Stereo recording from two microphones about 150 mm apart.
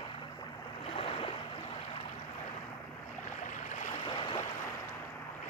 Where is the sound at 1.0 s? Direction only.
40° left (ahead or behind).